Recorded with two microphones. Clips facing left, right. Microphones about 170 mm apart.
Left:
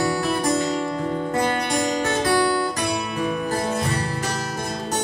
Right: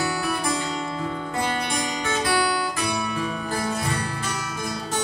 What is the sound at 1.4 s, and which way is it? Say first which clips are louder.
Music: left 3 dB; 45° left (ahead or behind).